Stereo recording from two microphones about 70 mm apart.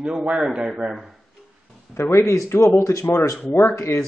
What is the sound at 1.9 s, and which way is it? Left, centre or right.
A man's voice, left.